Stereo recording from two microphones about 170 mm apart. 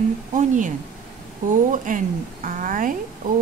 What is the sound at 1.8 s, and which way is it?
Speech, 50° right (ahead or behind).